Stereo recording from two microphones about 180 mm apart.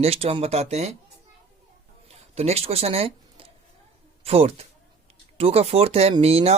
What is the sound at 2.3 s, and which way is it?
Speech, 35° right (ahead or behind).